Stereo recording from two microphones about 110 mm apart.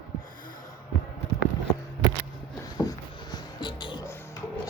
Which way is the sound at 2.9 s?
40° left (ahead or behind).